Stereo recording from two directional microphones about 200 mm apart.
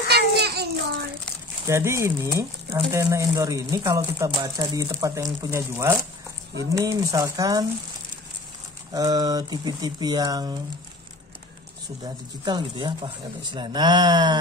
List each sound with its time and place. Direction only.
0.1 s child singing: 55° right (ahead or behind)
1.7 s speech: 15° right (ahead or behind)
8.9 s speech: 20° right (ahead or behind)
12.0 s speech: 20° right (ahead or behind)